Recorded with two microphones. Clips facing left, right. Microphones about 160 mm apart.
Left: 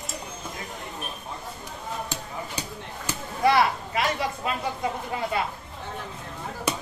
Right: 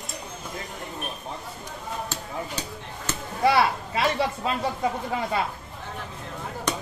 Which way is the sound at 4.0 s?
30° right (ahead or behind).